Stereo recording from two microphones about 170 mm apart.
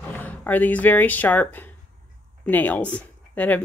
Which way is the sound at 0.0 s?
10° left (ahead or behind).